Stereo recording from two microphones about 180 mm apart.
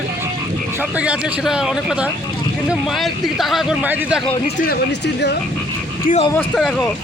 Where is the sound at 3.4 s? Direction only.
Centre (ahead or behind).